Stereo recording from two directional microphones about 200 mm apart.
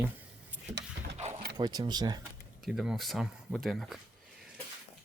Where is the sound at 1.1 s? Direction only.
35° right (ahead or behind).